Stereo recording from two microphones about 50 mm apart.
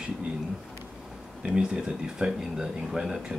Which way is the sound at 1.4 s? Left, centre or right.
Centre.